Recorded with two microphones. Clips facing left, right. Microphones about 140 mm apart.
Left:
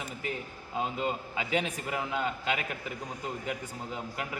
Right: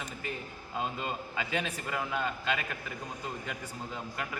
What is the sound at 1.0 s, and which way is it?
A man's voice, 15° left (ahead or behind).